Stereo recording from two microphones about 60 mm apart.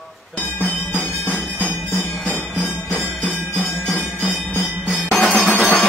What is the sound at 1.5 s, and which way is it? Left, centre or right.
Music, left.